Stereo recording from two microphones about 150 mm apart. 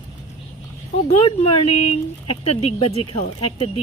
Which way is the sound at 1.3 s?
40° left (ahead or behind).